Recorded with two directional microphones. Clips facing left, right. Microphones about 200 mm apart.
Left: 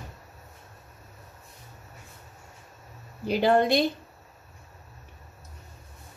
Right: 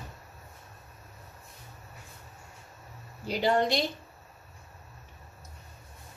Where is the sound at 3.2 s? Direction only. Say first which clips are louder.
Left 4 dB; 55° left (ahead or behind).